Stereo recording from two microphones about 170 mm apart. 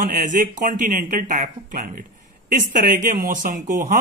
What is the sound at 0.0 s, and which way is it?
Speech, 55° right (ahead or behind).